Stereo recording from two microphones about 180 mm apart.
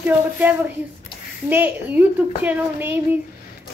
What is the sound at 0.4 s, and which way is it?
A child's voice, 10° right (ahead or behind).